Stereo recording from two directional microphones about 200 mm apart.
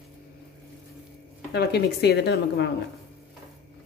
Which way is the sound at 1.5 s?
55° left (ahead or behind).